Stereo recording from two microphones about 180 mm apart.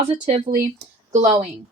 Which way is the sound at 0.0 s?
35° right (ahead or behind).